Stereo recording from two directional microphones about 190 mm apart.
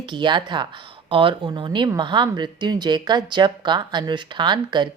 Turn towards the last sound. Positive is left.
turn(degrees=-25)  # may be behind; listen again after turning